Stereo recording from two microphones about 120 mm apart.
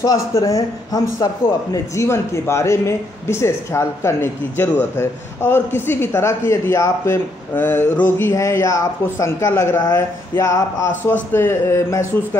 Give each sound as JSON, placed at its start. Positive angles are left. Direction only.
{"t": 0.0, "sound": "a man's voice", "side_deg": 30}